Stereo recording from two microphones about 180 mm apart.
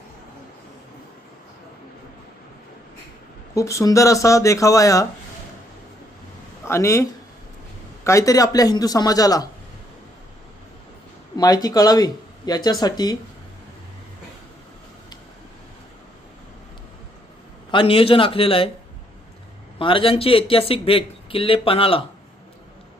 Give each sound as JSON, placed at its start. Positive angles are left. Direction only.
{"t": 3.5, "sound": "speech", "side_deg": 15}
{"t": 6.7, "sound": "speech", "side_deg": 15}
{"t": 11.3, "sound": "speech", "side_deg": 20}
{"t": 17.7, "sound": "speech", "side_deg": 30}
{"t": 19.8, "sound": "speech", "side_deg": 30}